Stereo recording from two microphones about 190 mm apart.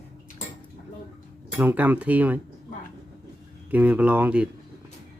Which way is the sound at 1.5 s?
10° right (ahead or behind).